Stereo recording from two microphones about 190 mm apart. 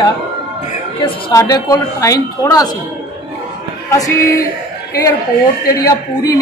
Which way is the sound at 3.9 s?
15° left (ahead or behind).